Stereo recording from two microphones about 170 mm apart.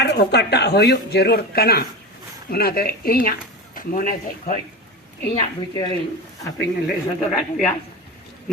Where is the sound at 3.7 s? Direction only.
55° left (ahead or behind).